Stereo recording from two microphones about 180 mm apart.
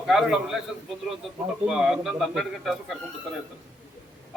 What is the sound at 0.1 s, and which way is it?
Speech, centre (ahead or behind).